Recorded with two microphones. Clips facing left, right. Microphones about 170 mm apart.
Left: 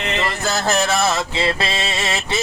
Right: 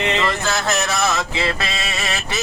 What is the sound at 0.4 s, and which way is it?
Mantra, 35° left (ahead or behind).